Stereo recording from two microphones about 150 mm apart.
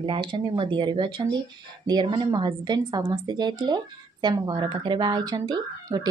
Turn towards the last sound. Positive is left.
turn(degrees=-25)  # may be behind; listen again after turning